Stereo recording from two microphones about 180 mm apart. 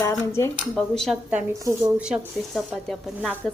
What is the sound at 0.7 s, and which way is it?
A woman's voice, 5° left (ahead or behind).